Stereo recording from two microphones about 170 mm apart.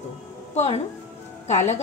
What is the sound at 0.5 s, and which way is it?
A woman's voice, 40° left (ahead or behind).